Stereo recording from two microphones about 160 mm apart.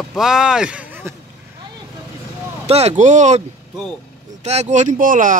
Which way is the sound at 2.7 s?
40° right (ahead or behind).